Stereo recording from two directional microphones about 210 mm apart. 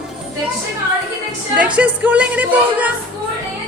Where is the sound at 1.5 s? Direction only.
5° right (ahead or behind).